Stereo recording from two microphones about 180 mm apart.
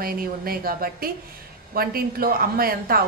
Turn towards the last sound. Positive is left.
turn(degrees=-55)  # may be behind; listen again after turning